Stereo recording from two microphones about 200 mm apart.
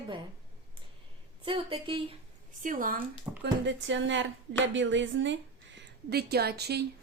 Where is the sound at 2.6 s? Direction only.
40° right (ahead or behind).